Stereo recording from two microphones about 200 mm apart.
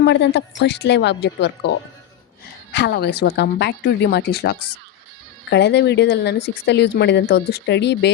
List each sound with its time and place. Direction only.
0.0 s speech: 60° left (ahead or behind)